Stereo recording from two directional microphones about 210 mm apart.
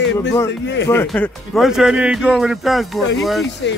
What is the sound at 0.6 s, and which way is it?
Speech, 55° left (ahead or behind).